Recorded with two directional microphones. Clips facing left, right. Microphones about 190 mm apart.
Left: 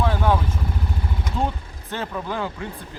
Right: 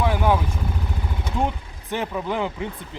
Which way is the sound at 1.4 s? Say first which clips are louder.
Right 1 dB; 15° right (ahead or behind).